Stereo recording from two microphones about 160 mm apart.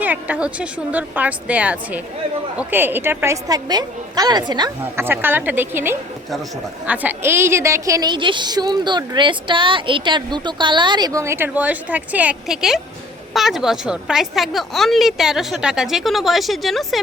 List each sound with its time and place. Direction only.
0.0 s a woman's voice: 10° right (ahead or behind); by 4.7 s 25° right (ahead or behind)
4.9 s a woman's voice: 15° right (ahead or behind)